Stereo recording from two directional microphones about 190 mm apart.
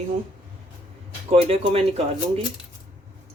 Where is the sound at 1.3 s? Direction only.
30° right (ahead or behind).